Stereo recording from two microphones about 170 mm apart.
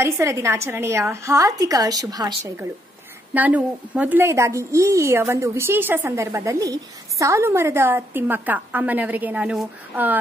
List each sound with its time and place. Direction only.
0.0 s a woman's voice: 15° right (ahead or behind)
3.3 s a woman's voice: 10° right (ahead or behind)